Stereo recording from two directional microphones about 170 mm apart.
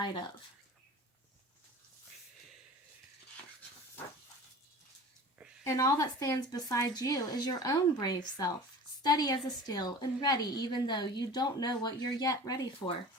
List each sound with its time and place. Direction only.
5.6 s a woman's voice: 20° left (ahead or behind)